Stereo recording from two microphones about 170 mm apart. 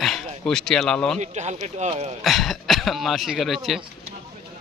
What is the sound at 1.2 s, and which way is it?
Speech, 40° right (ahead or behind).